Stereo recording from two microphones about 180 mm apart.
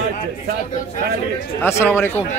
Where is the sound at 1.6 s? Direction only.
15° left (ahead or behind).